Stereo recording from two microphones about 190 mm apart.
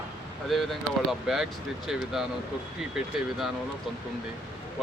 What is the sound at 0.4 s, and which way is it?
Speech, centre (ahead or behind).